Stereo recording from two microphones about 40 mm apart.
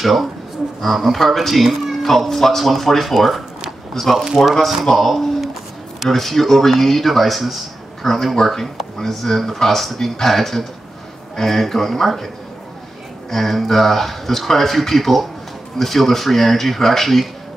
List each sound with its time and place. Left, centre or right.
0.0 s speech: centre
13.3 s speech: centre